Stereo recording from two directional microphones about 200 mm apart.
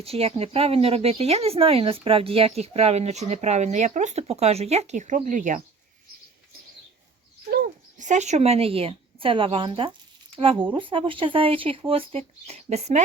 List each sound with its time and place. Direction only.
0.0 s speech: 30° right (ahead or behind)
7.5 s speech: 40° right (ahead or behind)